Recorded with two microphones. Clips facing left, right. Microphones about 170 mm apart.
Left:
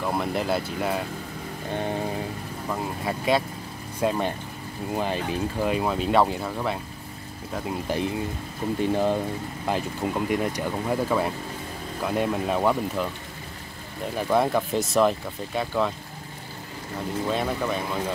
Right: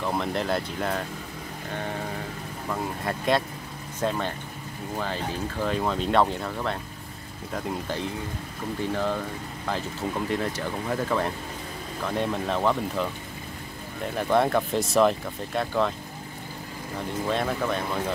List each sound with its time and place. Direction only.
0.0 s speech: 5° left (ahead or behind)
2.7 s speech: 5° left (ahead or behind)
8.6 s speech: 20° left (ahead or behind)
14.1 s speech: centre (ahead or behind)
17.3 s speech: 5° left (ahead or behind)